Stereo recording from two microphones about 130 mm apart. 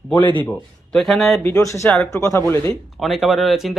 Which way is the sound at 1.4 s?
20° left (ahead or behind).